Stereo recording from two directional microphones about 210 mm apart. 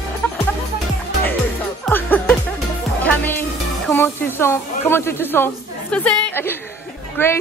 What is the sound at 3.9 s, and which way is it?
A woman's voice, 10° left (ahead or behind).